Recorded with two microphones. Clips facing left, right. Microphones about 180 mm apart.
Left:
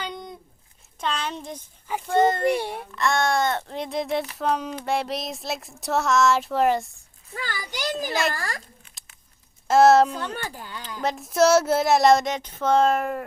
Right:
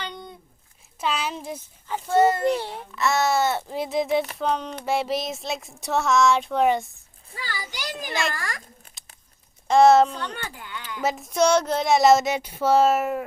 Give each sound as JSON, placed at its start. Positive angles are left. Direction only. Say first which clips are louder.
{"t": 0.9, "sound": "a sound", "louder": "right 1 dB", "side_deg": -5}
{"t": 2.1, "sound": "a child's voice", "louder": "right 1 dB", "side_deg": -10}
{"t": 2.5, "sound": "a child's voice", "louder": "left 1 dB", "side_deg": 15}
{"t": 2.9, "sound": "child singing", "louder": "right 1 dB", "side_deg": -5}
{"t": 7.3, "sound": "a child's voice", "louder": "left 2 dB", "side_deg": 50}
{"t": 8.0, "sound": "child singing", "louder": "left 1 dB", "side_deg": 0}
{"t": 8.3, "sound": "speech", "louder": "left 2 dB", "side_deg": 35}
{"t": 9.6, "sound": "child singing", "louder": "even", "side_deg": 0}
{"t": 10.3, "sound": "speech", "louder": "left 2 dB", "side_deg": 35}
{"t": 11.0, "sound": "child singing", "louder": "left 1 dB", "side_deg": 0}